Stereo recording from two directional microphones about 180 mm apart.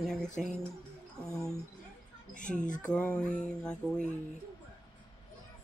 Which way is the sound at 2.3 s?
45° left (ahead or behind).